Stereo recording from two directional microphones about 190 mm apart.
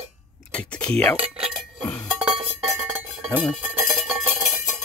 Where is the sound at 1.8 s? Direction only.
10° left (ahead or behind).